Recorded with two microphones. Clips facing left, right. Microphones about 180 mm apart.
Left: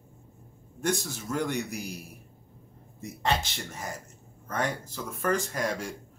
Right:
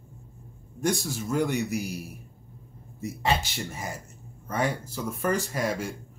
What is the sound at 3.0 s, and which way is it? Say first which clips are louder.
A man's voice: right 2 dB; 10° right (ahead or behind).